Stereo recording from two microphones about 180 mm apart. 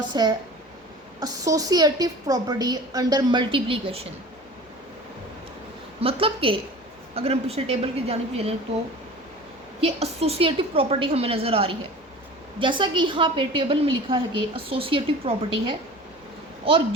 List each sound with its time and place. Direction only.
0.1 s a woman's voice: 25° right (ahead or behind)
6.0 s a woman's voice: 30° right (ahead or behind)
9.8 s a woman's voice: 35° right (ahead or behind)